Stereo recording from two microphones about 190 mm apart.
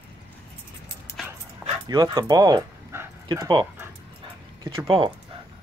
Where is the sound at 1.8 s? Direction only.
20° right (ahead or behind).